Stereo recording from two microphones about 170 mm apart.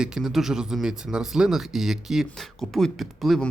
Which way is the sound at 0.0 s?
Centre (ahead or behind).